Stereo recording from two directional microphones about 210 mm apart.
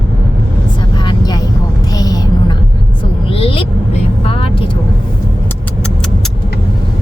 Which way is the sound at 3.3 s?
25° left (ahead or behind).